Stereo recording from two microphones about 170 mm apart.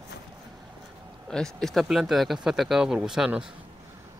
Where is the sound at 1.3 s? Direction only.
5° left (ahead or behind).